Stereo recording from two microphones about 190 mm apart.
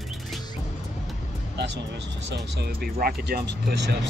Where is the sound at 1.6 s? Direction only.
65° right (ahead or behind).